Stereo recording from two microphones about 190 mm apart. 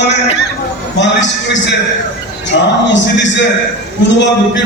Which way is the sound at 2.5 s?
70° left (ahead or behind).